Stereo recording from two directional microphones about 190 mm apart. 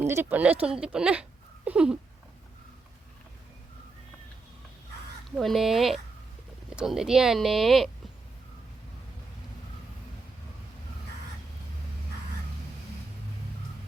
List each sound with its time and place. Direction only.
0.0 s speech: 10° right (ahead or behind)
5.4 s speech: centre (ahead or behind)